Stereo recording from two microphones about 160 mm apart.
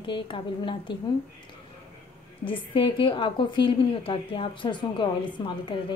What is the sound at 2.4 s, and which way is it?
A woman's voice, 30° left (ahead or behind).